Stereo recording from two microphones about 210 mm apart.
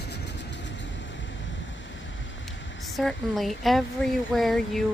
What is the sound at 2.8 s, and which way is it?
Speech, centre (ahead or behind).